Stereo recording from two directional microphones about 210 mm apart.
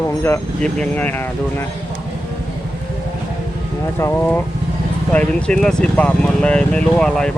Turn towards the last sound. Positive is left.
turn(degrees=5)  # may be behind; listen again after turning